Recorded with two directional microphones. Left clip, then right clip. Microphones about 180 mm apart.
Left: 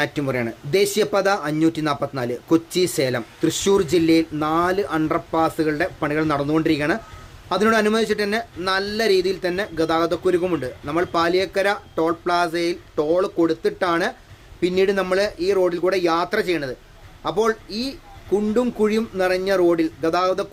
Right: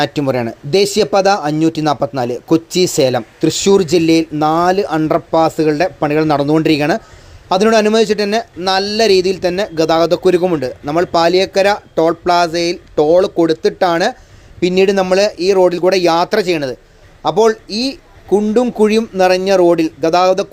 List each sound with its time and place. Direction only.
0.0 s speech: 35° right (ahead or behind)